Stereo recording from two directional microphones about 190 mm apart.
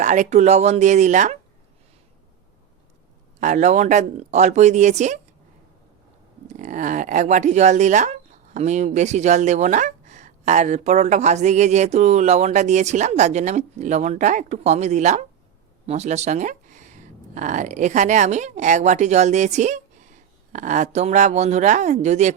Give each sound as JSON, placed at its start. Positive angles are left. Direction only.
{"t": 0.0, "sound": "speech", "side_deg": -40}
{"t": 3.4, "sound": "speech", "side_deg": -40}
{"t": 6.5, "sound": "speech", "side_deg": -40}